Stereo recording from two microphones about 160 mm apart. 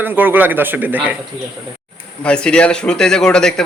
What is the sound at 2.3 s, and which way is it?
A man's voice, 5° left (ahead or behind).